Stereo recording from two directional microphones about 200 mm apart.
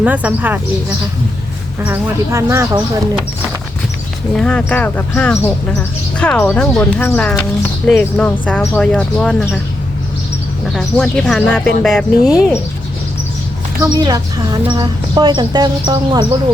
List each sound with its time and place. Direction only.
0.0 s speech: 10° right (ahead or behind)
1.8 s speech: 10° right (ahead or behind)
4.4 s speech: 5° left (ahead or behind)
10.8 s speech: 5° left (ahead or behind)
13.8 s speech: 20° right (ahead or behind)